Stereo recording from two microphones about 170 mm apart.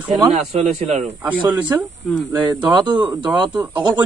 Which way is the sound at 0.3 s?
35° right (ahead or behind).